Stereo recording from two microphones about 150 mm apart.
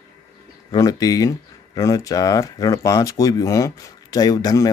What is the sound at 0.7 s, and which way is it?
Speech, 25° left (ahead or behind).